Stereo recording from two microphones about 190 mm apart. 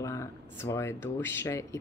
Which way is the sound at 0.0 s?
15° left (ahead or behind).